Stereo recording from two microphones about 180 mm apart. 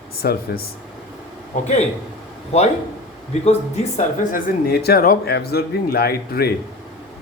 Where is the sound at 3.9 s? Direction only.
55° left (ahead or behind).